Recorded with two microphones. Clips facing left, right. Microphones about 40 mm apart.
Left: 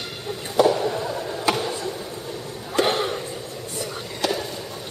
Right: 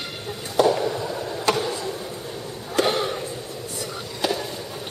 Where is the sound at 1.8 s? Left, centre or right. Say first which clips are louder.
Even; centre.